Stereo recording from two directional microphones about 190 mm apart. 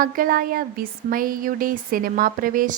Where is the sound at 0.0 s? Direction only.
50° right (ahead or behind).